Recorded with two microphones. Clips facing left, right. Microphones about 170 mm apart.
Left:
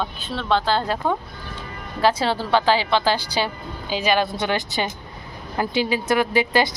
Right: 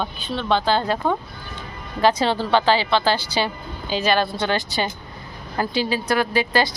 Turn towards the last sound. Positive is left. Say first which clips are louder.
# left 1 dB
turn(degrees=20)  # may be behind; listen again after turning